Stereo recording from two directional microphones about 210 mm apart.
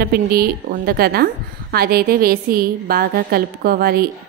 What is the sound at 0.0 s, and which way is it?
A woman's voice, 45° right (ahead or behind).